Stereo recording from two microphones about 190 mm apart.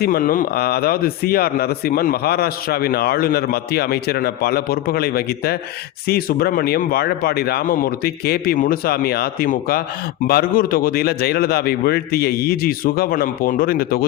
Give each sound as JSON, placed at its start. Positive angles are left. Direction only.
{"t": 0.0, "sound": "a man's voice", "side_deg": 50}